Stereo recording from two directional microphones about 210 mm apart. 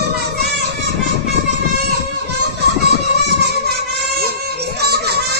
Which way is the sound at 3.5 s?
50° right (ahead or behind).